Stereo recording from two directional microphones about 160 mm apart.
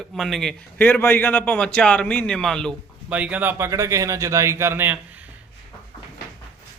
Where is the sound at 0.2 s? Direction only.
Centre (ahead or behind).